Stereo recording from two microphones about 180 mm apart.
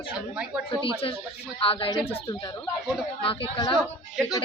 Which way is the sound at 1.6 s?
30° left (ahead or behind).